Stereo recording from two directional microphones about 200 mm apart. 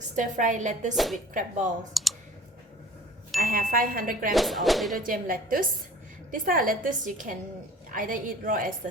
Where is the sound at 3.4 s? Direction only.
45° right (ahead or behind).